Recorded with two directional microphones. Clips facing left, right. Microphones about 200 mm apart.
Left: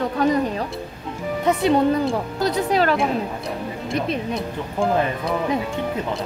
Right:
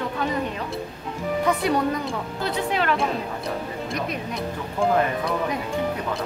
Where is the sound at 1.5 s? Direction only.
25° left (ahead or behind).